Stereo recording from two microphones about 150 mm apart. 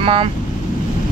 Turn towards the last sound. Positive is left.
turn(degrees=-35)  # may be behind; listen again after turning